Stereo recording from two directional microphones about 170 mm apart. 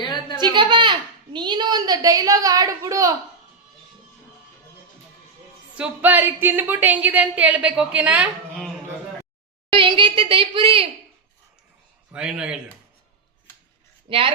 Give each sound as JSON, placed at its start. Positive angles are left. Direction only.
{"t": 0.0, "sound": "a sound", "side_deg": 25}
{"t": 0.4, "sound": "a woman's voice", "side_deg": -30}
{"t": 5.7, "sound": "a woman's voice", "side_deg": -10}
{"t": 9.7, "sound": "a woman's voice", "side_deg": -30}
{"t": 12.1, "sound": "speech", "side_deg": -5}
{"t": 14.1, "sound": "a woman's voice", "side_deg": -30}